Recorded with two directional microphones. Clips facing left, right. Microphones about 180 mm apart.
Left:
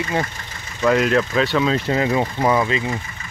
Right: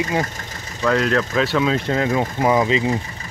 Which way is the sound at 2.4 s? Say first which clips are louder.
Right 4 dB; 15° right (ahead or behind).